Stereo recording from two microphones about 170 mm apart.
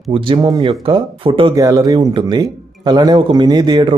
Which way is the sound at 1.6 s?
20° right (ahead or behind).